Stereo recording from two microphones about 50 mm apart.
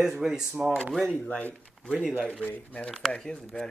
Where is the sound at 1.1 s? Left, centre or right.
Left.